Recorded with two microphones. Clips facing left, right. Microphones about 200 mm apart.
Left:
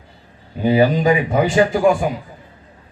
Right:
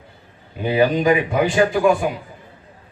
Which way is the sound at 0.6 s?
35° left (ahead or behind).